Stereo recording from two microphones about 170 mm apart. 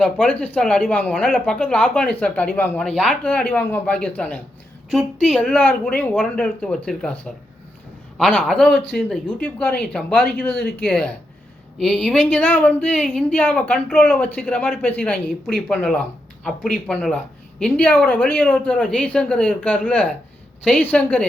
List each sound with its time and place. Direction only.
0.0 s speech: 5° left (ahead or behind)
8.2 s speech: 5° left (ahead or behind)
10.6 s speech: 65° left (ahead or behind)
10.8 s speech: 5° left (ahead or behind)